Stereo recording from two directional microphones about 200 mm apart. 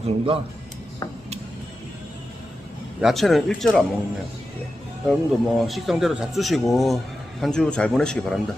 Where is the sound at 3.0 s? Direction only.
Centre (ahead or behind).